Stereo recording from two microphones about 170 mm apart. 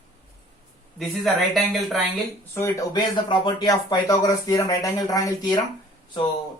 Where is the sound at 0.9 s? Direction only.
Centre (ahead or behind).